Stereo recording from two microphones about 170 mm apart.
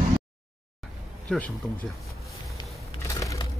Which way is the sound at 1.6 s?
5° left (ahead or behind).